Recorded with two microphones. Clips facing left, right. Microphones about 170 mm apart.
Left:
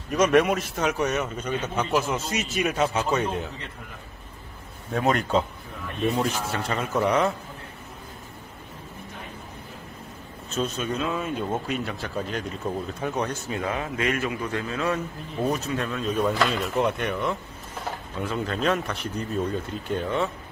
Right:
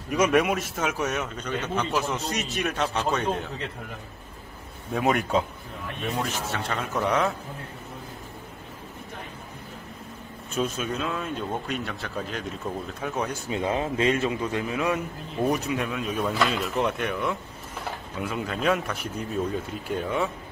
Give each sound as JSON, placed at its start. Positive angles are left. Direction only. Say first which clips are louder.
{"t": 0.1, "sound": "a man's voice", "louder": "left 2 dB", "side_deg": -5}
{"t": 4.9, "sound": "a man's voice", "louder": "left 1 dB", "side_deg": -5}
{"t": 10.5, "sound": "a man's voice", "louder": "even", "side_deg": -5}
{"t": 13.5, "sound": "a man's voice", "louder": "right 2 dB", "side_deg": -25}